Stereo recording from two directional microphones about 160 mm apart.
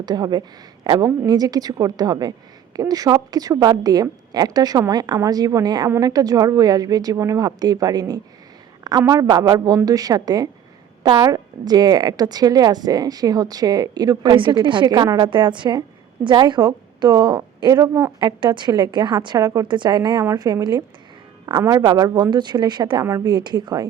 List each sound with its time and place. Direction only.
0.0 s a woman's voice: 25° right (ahead or behind)